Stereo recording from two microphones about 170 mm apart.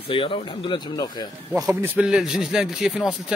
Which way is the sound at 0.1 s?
30° left (ahead or behind).